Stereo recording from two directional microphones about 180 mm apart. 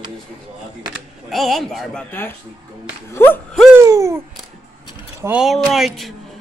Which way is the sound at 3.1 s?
10° left (ahead or behind).